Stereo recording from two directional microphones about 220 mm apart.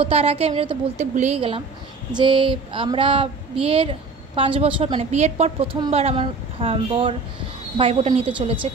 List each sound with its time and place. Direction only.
0.0 s a woman's voice: 25° right (ahead or behind)